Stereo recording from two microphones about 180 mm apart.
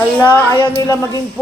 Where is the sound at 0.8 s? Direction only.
20° left (ahead or behind).